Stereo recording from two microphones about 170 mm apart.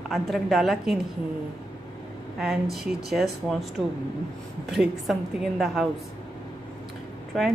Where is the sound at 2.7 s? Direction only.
Centre (ahead or behind).